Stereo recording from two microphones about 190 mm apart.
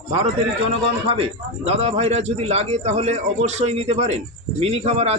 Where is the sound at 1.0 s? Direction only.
30° right (ahead or behind).